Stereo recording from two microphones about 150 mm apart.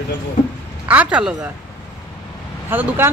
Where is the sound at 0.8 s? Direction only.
10° right (ahead or behind).